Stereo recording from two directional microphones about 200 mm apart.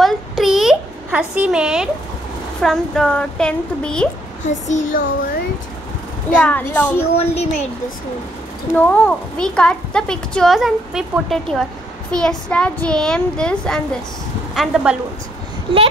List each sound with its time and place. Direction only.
0.0 s a sound: centre (ahead or behind)
2.6 s a woman's voice: centre (ahead or behind)
4.5 s child singing: 35° left (ahead or behind)
6.3 s a woman's voice: 5° left (ahead or behind)
7.2 s child singing: 30° left (ahead or behind)
8.7 s a woman's voice: 5° left (ahead or behind)